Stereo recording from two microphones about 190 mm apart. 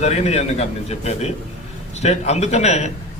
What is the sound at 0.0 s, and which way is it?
A man's voice, 35° left (ahead or behind).